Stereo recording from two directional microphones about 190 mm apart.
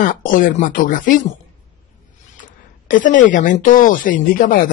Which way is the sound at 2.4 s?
45° left (ahead or behind).